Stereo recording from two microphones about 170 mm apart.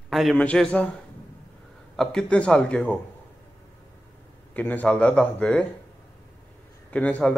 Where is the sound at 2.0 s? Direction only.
5° left (ahead or behind).